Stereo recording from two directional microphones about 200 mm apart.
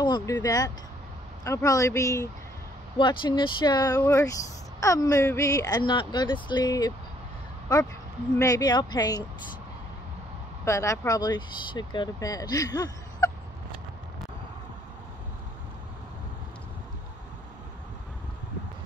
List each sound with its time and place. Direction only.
0.0 s speech: 20° left (ahead or behind)
10.6 s speech: 15° left (ahead or behind)